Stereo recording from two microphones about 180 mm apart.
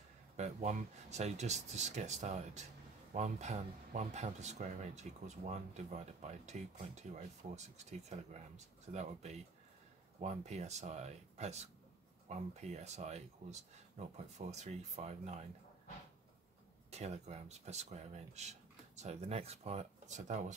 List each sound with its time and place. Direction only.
0.4 s speech: 40° right (ahead or behind)
16.9 s speech: 35° right (ahead or behind)